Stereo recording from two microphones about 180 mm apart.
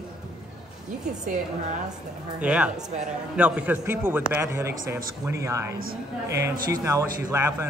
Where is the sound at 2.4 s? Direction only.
5° right (ahead or behind).